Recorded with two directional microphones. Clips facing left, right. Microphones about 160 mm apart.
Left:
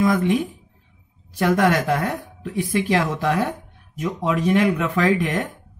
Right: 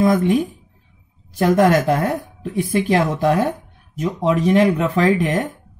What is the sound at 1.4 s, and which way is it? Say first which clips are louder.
Speech: right 4 dB; 30° right (ahead or behind).